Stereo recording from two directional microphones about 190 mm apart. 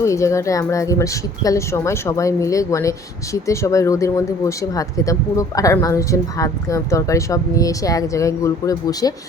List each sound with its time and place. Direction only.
0.0 s speech: 15° left (ahead or behind)